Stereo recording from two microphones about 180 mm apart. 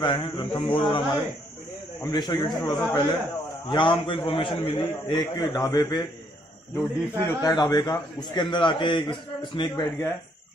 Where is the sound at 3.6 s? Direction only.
25° left (ahead or behind).